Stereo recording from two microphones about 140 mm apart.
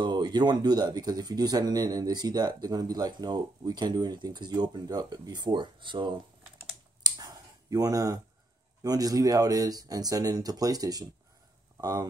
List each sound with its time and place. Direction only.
0.0 s speech: 30° right (ahead or behind)
7.0 s a sound: 25° right (ahead or behind)
8.8 s speech: 25° right (ahead or behind)